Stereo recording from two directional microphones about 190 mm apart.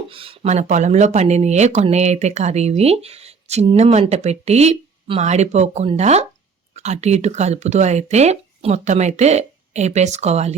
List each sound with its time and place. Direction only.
0.1 s speech: 30° right (ahead or behind)